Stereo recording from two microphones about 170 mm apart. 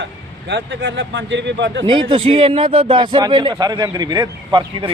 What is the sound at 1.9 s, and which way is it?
Speech, 30° right (ahead or behind).